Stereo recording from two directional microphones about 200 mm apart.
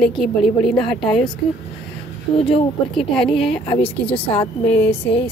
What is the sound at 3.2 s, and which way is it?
Speech, centre (ahead or behind).